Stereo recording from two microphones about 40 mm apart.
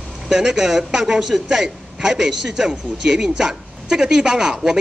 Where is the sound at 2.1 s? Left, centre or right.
Centre.